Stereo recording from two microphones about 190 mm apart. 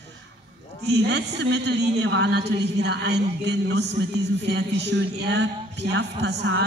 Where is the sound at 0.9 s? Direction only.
65° right (ahead or behind).